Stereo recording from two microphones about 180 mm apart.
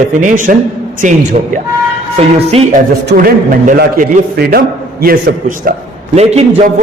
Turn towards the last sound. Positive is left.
turn(degrees=-35)  # may be behind; listen again after turning